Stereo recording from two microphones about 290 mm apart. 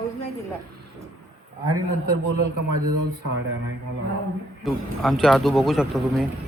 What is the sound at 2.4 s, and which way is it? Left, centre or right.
Speech, right.